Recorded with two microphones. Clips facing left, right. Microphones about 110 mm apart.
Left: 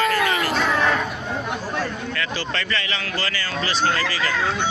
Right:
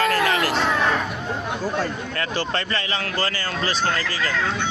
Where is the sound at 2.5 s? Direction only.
40° right (ahead or behind).